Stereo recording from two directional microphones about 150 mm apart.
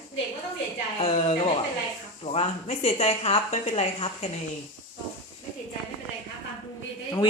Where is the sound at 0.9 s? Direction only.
40° left (ahead or behind).